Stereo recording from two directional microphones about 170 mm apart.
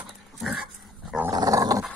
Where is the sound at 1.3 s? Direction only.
20° right (ahead or behind).